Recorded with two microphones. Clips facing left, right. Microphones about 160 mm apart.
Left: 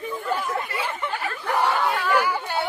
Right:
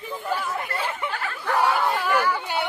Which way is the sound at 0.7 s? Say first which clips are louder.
Even; 10° left (ahead or behind).